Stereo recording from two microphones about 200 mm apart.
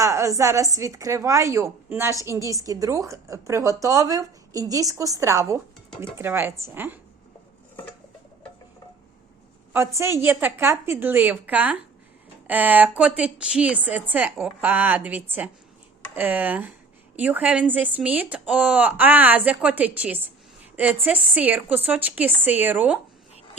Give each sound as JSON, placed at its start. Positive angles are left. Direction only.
{"t": 0.0, "sound": "a woman's voice", "side_deg": -15}
{"t": 9.7, "sound": "a woman's voice", "side_deg": -15}